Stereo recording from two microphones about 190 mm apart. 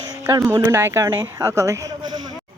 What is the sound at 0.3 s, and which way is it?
A woman's voice, 15° right (ahead or behind).